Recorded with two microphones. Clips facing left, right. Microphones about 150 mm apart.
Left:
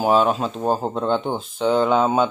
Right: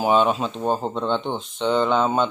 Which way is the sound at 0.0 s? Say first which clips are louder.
Left 1 dB; centre (ahead or behind).